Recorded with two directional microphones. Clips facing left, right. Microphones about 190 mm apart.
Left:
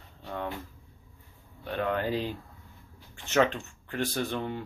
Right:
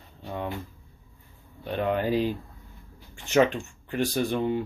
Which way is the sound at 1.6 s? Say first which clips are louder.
Right 3 dB; 20° right (ahead or behind).